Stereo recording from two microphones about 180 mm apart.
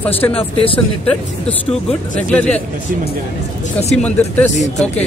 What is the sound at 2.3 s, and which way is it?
Speech, 5° left (ahead or behind).